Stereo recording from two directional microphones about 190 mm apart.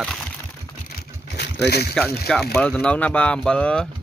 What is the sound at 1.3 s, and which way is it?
Boat, 65° left (ahead or behind).